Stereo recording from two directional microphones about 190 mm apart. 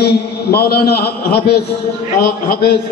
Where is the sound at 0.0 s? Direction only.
55° left (ahead or behind).